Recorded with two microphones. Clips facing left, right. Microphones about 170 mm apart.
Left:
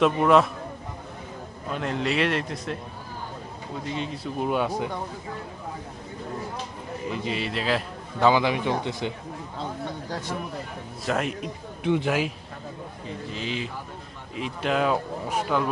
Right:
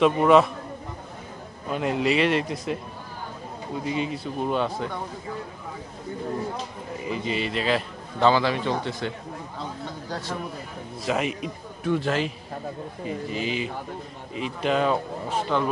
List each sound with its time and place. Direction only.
0.0 s speech: centre (ahead or behind)
1.7 s speech: 5° right (ahead or behind)
3.8 s speech: 5° right (ahead or behind)
7.0 s a man's voice: centre (ahead or behind)
8.3 s speech: 15° left (ahead or behind)
11.0 s speech: centre (ahead or behind)
11.8 s speech: 20° left (ahead or behind)
13.1 s speech: 5° right (ahead or behind)